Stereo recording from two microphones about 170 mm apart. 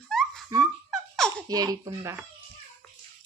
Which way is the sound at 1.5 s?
20° right (ahead or behind).